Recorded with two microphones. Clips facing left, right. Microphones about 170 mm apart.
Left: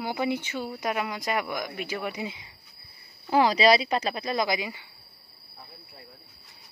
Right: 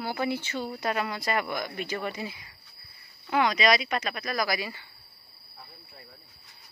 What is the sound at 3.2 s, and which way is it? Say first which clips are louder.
Speech: left 4 dB; 30° left (ahead or behind).